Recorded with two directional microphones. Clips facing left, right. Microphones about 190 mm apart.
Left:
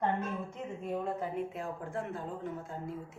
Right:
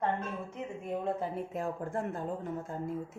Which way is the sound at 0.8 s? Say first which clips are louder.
Even; 15° right (ahead or behind).